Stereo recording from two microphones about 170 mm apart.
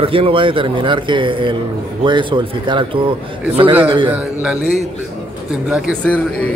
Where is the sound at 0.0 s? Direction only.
30° right (ahead or behind).